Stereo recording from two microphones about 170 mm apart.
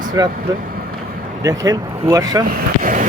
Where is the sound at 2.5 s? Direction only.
50° right (ahead or behind).